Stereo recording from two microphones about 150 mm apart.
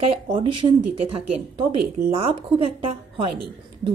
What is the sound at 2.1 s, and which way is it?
Speech, 40° right (ahead or behind).